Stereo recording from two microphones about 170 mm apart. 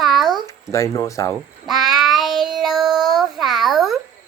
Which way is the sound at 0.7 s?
20° left (ahead or behind).